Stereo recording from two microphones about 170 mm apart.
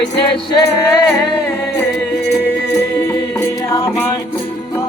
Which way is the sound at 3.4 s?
15° left (ahead or behind).